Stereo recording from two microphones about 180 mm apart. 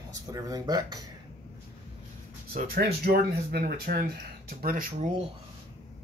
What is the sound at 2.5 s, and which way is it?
Speech, 55° right (ahead or behind).